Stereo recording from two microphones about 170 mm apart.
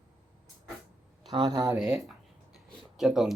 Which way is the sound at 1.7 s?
Centre (ahead or behind).